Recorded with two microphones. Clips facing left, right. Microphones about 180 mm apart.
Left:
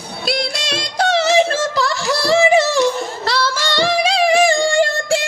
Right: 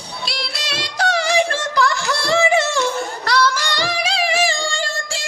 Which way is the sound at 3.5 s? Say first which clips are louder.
Left 4 dB; 10° right (ahead or behind).